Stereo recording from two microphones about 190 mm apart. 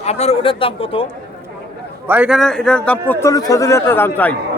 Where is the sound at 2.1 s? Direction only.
5° right (ahead or behind); by 4.3 s 10° left (ahead or behind).